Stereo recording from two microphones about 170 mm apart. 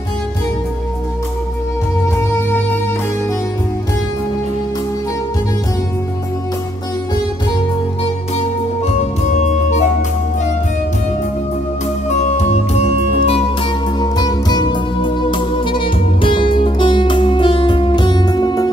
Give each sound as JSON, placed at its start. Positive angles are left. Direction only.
{"t": 9.4, "sound": "music", "side_deg": 45}
{"t": 12.4, "sound": "music", "side_deg": 40}
{"t": 13.9, "sound": "music", "side_deg": 25}